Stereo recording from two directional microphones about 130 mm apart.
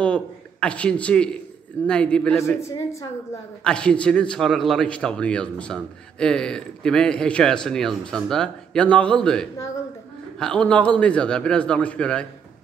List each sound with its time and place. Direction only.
0.0 s a man's voice: 10° left (ahead or behind)
2.3 s speech: 20° left (ahead or behind)
3.6 s a man's voice: 5° left (ahead or behind)